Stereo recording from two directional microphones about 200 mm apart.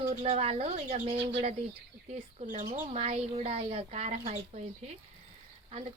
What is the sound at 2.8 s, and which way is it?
Speech, 30° right (ahead or behind).